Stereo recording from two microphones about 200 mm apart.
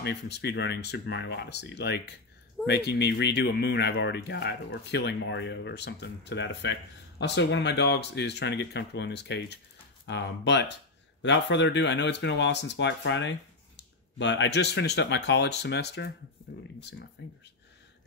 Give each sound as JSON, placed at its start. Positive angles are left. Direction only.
{"t": 0.0, "sound": "speech", "side_deg": 55}
{"t": 17.2, "sound": "speech", "side_deg": 60}